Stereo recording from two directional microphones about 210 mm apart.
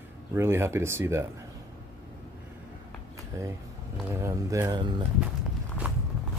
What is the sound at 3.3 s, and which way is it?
Speech, 15° right (ahead or behind).